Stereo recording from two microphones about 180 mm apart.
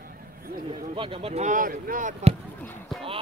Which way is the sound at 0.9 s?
30° right (ahead or behind).